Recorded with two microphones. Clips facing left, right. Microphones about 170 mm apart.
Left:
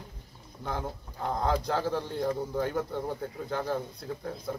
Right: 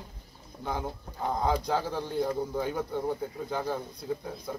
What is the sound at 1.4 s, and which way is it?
Speech, 5° right (ahead or behind).